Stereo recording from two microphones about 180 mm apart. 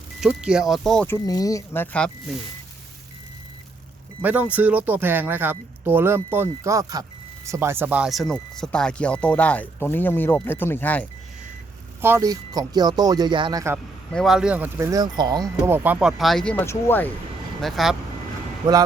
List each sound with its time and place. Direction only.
0.2 s speech: 5° right (ahead or behind)
4.2 s speech: 10° right (ahead or behind); by 11.0 s 10° left (ahead or behind)
12.0 s speech: 15° right (ahead or behind)
14.1 s speech: centre (ahead or behind)
17.6 s speech: centre (ahead or behind)